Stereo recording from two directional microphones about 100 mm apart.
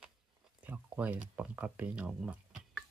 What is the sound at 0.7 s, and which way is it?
Speech, 15° right (ahead or behind).